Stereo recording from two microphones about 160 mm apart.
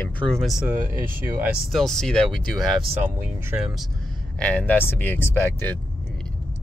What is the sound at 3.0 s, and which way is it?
Speech, 15° right (ahead or behind).